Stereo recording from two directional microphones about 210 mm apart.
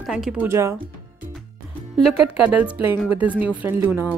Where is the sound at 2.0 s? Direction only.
5° right (ahead or behind).